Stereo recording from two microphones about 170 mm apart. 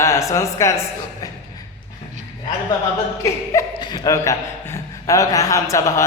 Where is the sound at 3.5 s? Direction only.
25° left (ahead or behind).